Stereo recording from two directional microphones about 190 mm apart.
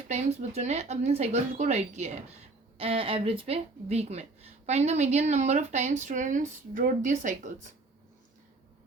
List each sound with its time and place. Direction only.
0.1 s speech: 35° right (ahead or behind)